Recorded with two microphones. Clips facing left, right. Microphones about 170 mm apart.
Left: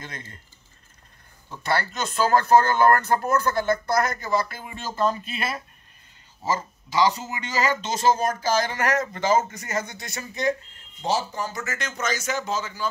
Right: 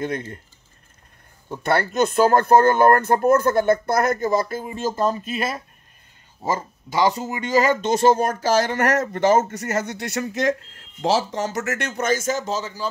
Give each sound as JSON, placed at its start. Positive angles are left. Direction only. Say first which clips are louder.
{"t": 0.0, "sound": "speech", "louder": "right 14 dB", "side_deg": -60}
{"t": 1.6, "sound": "speech", "louder": "right 7 dB", "side_deg": -55}